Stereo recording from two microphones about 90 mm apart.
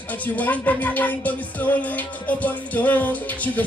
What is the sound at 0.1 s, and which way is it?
Music, 20° left (ahead or behind).